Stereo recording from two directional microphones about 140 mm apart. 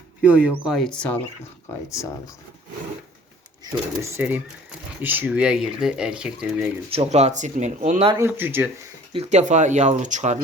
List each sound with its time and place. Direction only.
0.2 s speech: 10° right (ahead or behind); by 1.2 s 10° left (ahead or behind)
1.9 s speech: 20° left (ahead or behind)
4.2 s speech: 10° right (ahead or behind)
6.9 s speech: 50° right (ahead or behind)
8.2 s speech: 15° right (ahead or behind)
9.1 s speech: 55° right (ahead or behind)